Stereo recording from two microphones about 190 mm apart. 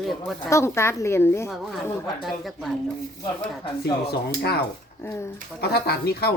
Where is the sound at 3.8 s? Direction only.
60° left (ahead or behind).